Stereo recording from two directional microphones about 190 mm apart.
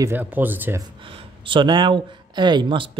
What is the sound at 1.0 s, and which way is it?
Speech, 25° right (ahead or behind).